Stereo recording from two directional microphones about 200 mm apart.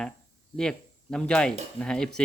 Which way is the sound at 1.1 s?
5° left (ahead or behind).